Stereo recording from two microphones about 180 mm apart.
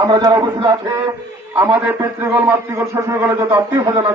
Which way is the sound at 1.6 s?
10° right (ahead or behind).